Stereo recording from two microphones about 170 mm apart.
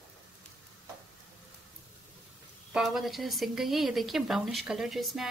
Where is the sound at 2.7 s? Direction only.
Centre (ahead or behind).